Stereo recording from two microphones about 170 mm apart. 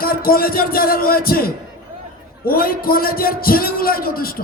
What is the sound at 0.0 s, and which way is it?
A man's voice, 60° left (ahead or behind).